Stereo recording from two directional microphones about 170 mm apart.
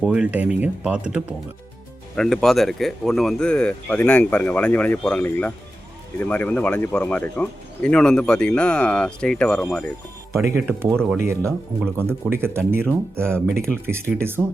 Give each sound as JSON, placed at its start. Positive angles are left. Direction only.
{"t": 0.0, "sound": "speech", "side_deg": -5}
{"t": 10.3, "sound": "speech", "side_deg": -15}
{"t": 10.9, "sound": "speech", "side_deg": 0}
{"t": 11.2, "sound": "speech", "side_deg": -15}